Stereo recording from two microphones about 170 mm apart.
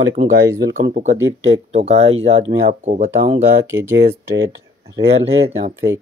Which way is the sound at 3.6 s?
15° right (ahead or behind).